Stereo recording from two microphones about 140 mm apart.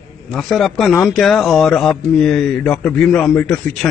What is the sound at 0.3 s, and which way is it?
A man's voice, centre (ahead or behind).